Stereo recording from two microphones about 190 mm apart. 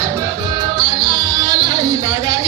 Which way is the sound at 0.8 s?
20° right (ahead or behind).